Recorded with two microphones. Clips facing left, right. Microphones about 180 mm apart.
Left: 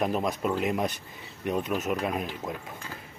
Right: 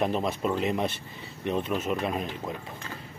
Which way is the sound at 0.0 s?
5° left (ahead or behind).